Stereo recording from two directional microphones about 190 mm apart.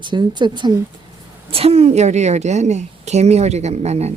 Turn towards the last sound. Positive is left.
turn(degrees=-35)  # may be behind; listen again after turning